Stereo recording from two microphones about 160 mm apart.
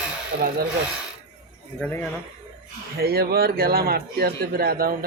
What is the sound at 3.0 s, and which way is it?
A man's voice, 75° right (ahead or behind).